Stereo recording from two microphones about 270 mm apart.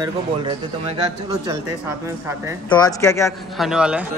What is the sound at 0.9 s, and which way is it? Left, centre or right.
Speech, right.